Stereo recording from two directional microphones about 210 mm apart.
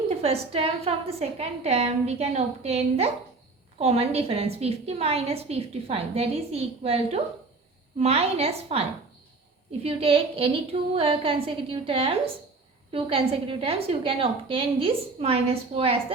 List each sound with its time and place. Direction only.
0.2 s a woman's voice: 30° right (ahead or behind)